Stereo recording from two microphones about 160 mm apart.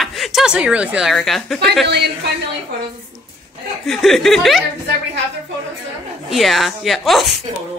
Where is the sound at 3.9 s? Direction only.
Centre (ahead or behind).